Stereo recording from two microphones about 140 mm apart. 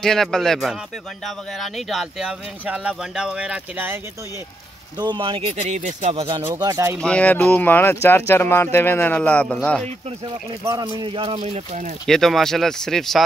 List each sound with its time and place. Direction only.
0.0 s speech: 5° left (ahead or behind); by 4.0 s 15° right (ahead or behind)
4.9 s speech: 35° right (ahead or behind); by 6.2 s 55° right (ahead or behind)
6.4 s speech: 20° right (ahead or behind)
7.0 s speech: 10° left (ahead or behind)
10.6 s speech: 25° right (ahead or behind); by 11.9 s 50° right (ahead or behind)
12.1 s speech: centre (ahead or behind)